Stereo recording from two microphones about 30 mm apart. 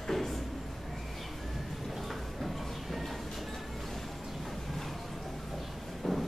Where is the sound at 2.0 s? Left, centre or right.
Centre.